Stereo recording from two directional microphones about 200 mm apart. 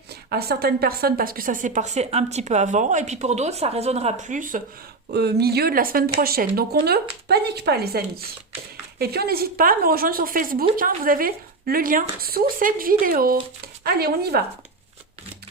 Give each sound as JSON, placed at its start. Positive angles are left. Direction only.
{"t": 0.1, "sound": "a woman's voice", "side_deg": -50}
{"t": 5.1, "sound": "a woman's voice", "side_deg": -55}